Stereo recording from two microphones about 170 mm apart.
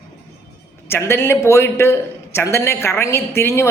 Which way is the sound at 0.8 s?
15° left (ahead or behind).